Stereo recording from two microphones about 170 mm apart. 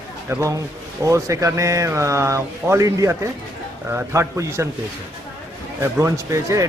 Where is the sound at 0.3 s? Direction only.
15° right (ahead or behind).